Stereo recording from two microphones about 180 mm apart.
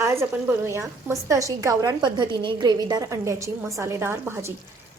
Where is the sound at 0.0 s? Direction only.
15° right (ahead or behind).